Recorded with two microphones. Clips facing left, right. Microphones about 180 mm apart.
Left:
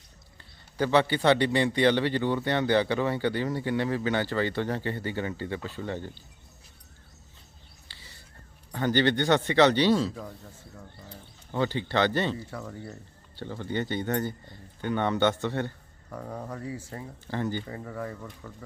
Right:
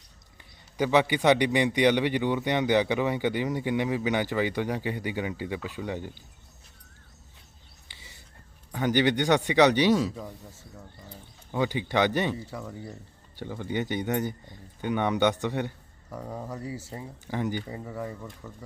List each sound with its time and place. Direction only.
0.8 s a man's voice: 15° right (ahead or behind)
7.9 s a sound: 20° right (ahead or behind)
8.7 s a man's voice: 15° right (ahead or behind)
11.5 s a man's voice: 15° right (ahead or behind)
16.0 s speech: centre (ahead or behind)
16.9 s a man's voice: 15° right (ahead or behind)